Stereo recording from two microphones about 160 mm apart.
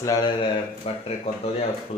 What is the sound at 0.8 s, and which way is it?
Speech, 40° left (ahead or behind).